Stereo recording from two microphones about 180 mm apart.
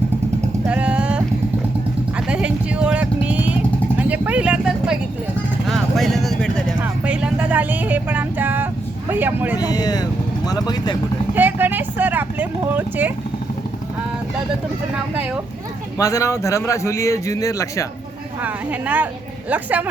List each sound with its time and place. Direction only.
0.7 s vehicle: 5° right (ahead or behind)
6.8 s speech: 5° right (ahead or behind)
9.6 s speech: 20° left (ahead or behind)
11.3 s speech: 10° right (ahead or behind)
16.0 s a man's voice: 20° left (ahead or behind)
18.4 s speech: 10° right (ahead or behind)